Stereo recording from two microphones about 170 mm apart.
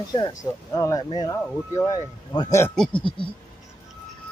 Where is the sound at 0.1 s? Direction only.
20° left (ahead or behind).